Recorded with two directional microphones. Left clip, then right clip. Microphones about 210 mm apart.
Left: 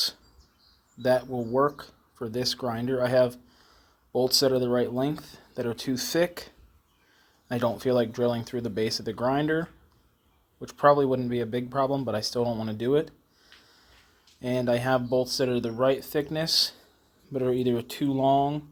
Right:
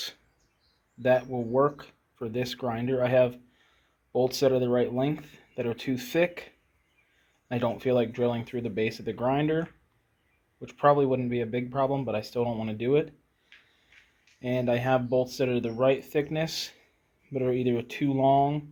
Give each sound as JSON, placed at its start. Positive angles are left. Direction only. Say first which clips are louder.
{"t": 1.0, "sound": "speech", "louder": "even", "side_deg": 20}
{"t": 14.4, "sound": "speech", "louder": "left 1 dB", "side_deg": 15}